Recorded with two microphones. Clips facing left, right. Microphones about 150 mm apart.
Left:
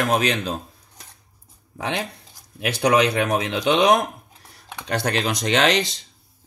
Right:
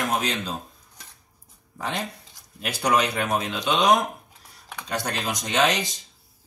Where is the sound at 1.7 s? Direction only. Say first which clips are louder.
Left 3 dB; 75° left (ahead or behind).